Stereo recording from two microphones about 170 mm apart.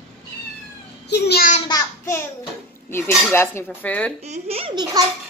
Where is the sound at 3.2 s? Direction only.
15° left (ahead or behind).